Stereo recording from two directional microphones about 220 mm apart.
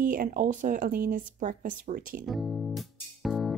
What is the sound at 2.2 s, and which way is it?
Music, centre (ahead or behind).